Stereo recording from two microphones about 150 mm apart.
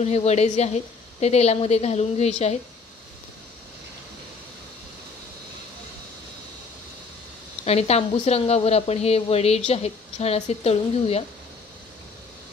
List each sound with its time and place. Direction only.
0.0 s a woman's voice: 45° left (ahead or behind)
7.6 s a woman's voice: 45° left (ahead or behind)